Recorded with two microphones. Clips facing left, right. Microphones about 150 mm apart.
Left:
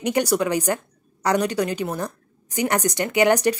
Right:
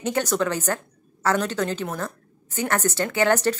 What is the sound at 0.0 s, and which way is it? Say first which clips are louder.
A woman's voice: left 3 dB; 15° left (ahead or behind).